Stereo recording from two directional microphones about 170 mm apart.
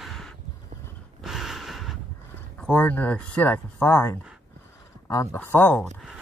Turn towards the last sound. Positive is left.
turn(degrees=10)  # may be behind; listen again after turning